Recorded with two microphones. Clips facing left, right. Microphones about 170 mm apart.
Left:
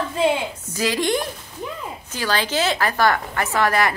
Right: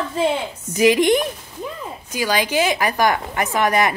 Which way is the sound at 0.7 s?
20° right (ahead or behind).